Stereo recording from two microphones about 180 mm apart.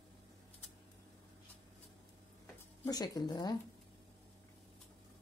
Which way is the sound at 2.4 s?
20° left (ahead or behind).